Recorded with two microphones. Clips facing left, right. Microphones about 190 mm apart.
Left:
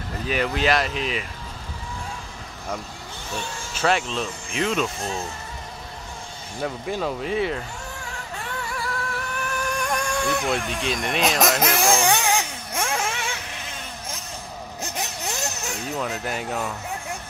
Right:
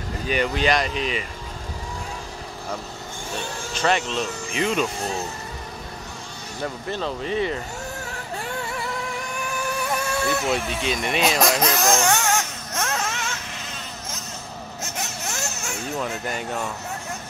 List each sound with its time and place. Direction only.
0.3 s speech: centre (ahead or behind)
3.7 s speech: 5° left (ahead or behind)
6.6 s speech: 10° left (ahead or behind)
8.6 s music: 20° right (ahead or behind)
9.3 s vehicle: 10° right (ahead or behind); by 13.4 s 10° left (ahead or behind)
14.8 s a sound: 15° left (ahead or behind)
16.0 s speech: centre (ahead or behind)